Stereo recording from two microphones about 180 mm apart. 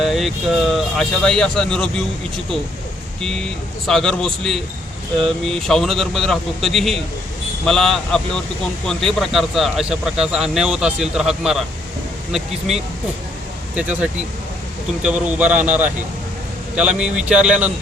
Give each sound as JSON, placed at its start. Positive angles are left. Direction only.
{"t": 0.0, "sound": "a man's voice", "side_deg": 0}
{"t": 17.0, "sound": "a man's voice", "side_deg": -5}